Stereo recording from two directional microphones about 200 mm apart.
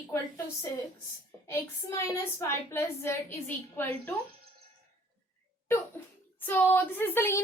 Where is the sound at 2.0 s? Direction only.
15° left (ahead or behind).